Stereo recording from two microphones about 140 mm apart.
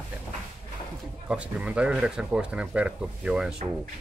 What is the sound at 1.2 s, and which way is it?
Speech, 10° right (ahead or behind).